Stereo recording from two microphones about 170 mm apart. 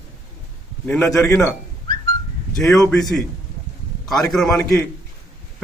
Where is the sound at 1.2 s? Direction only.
20° left (ahead or behind).